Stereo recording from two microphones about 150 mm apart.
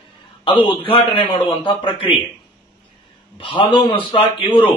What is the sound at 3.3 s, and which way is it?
A man's voice, 35° left (ahead or behind).